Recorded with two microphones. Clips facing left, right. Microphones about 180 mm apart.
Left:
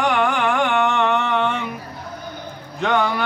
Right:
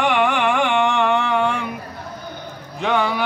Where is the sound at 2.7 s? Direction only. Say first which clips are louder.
Even; centre (ahead or behind).